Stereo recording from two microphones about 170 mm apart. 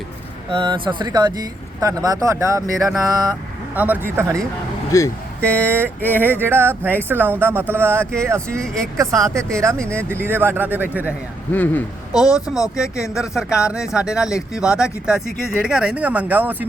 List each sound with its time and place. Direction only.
0.5 s speech: 30° right (ahead or behind)
3.8 s speech: 10° right (ahead or behind)
4.9 s speech: 20° left (ahead or behind)
5.4 s speech: 10° left (ahead or behind)
5.6 s speech: 15° right (ahead or behind)
8.6 s speech: 5° left (ahead or behind)
9.0 s speech: 20° right (ahead or behind)
11.5 s speech: 10° left (ahead or behind)
12.1 s speech: 5° right (ahead or behind)